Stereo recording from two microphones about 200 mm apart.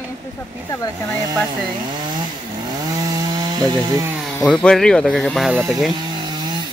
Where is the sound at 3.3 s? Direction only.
20° right (ahead or behind).